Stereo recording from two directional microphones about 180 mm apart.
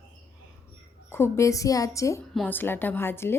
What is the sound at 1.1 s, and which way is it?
Speech, 15° left (ahead or behind).